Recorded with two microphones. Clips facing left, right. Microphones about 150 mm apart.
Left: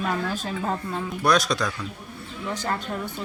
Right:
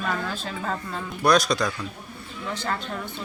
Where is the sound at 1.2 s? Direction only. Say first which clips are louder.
Right 2 dB; centre (ahead or behind).